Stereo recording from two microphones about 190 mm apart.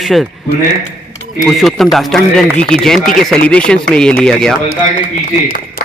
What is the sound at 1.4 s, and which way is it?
A man's voice, centre (ahead or behind).